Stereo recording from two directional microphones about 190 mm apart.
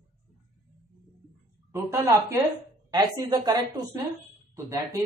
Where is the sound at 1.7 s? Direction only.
15° right (ahead or behind).